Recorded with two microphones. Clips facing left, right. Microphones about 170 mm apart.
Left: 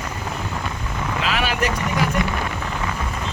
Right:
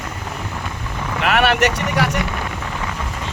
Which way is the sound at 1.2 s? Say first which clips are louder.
Right 7 dB; 60° right (ahead or behind).